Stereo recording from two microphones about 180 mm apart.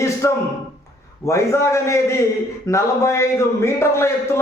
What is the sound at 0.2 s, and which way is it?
A man's voice, 15° left (ahead or behind).